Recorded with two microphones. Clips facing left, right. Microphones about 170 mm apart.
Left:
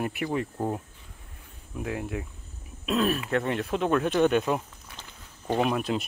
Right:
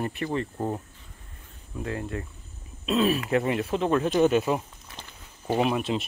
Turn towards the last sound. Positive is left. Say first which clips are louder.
# right 1 dB
turn(degrees=0)  # may be behind; listen again after turning